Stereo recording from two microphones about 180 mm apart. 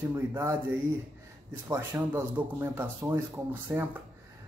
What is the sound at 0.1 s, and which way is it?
Speech, 15° right (ahead or behind).